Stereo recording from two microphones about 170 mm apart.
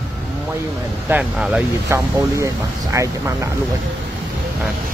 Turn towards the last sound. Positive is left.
turn(degrees=-20)  # may be behind; listen again after turning